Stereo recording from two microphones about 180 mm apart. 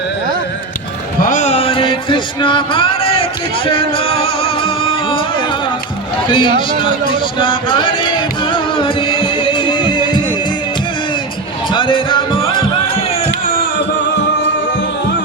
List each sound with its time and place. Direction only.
1.2 s music: 45° left (ahead or behind); by 5.2 s 30° left (ahead or behind)
6.2 s a man's voice: 25° left (ahead or behind)
7.3 s music: 25° left (ahead or behind)
11.7 s music: 25° left (ahead or behind)